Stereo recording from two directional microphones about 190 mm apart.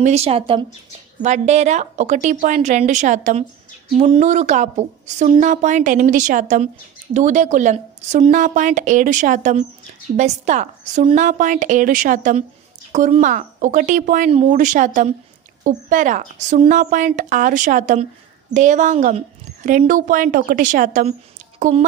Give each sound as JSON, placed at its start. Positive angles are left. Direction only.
{"t": 0.0, "sound": "a woman's voice", "side_deg": -35}